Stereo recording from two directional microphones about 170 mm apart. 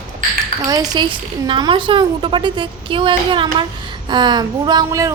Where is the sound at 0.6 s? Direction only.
20° right (ahead or behind).